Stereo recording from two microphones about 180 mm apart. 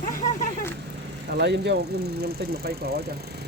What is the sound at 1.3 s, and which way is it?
Speech, 70° right (ahead or behind).